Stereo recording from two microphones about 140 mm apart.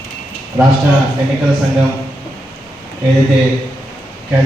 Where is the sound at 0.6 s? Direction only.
15° right (ahead or behind).